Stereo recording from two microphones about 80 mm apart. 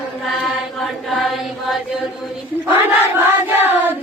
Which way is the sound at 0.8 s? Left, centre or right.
Centre.